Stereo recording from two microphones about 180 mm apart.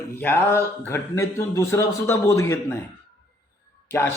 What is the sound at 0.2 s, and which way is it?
Speech, 10° left (ahead or behind).